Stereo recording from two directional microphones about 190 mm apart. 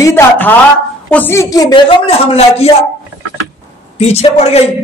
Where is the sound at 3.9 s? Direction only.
35° left (ahead or behind).